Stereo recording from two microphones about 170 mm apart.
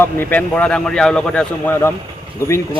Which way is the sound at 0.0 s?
10° left (ahead or behind).